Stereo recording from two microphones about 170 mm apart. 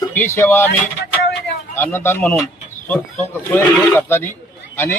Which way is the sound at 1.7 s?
10° left (ahead or behind).